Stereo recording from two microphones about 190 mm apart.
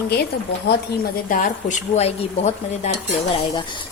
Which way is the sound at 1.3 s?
40° left (ahead or behind).